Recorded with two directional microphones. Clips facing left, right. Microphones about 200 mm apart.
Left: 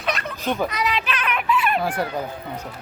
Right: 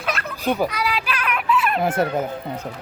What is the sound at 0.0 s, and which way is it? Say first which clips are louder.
Fowl: right 1 dB; 5° right (ahead or behind).